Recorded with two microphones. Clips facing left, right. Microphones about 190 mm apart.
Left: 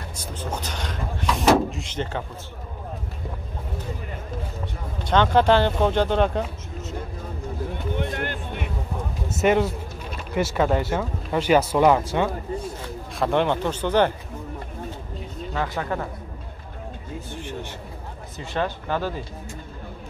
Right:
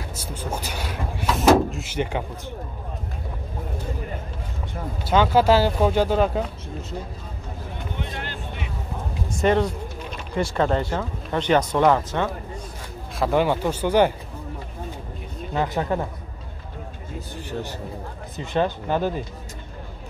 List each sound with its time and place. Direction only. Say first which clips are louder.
0.1 s vehicle: even; 10° right (ahead or behind)
5.0 s speech: even; 5° right (ahead or behind)
7.9 s vehicle: left 5 dB; 55° left (ahead or behind)
9.3 s speech: even; 5° left (ahead or behind)
13.2 s speech: right 1 dB; 5° right (ahead or behind)
15.5 s speech: right 4 dB; 20° right (ahead or behind)
17.3 s a sound: right 4 dB; 40° right (ahead or behind)
18.4 s speech: right 4 dB; 20° right (ahead or behind)